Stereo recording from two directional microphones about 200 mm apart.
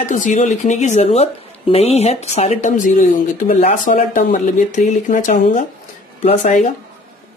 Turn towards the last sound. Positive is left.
turn(degrees=35)  # may be behind; listen again after turning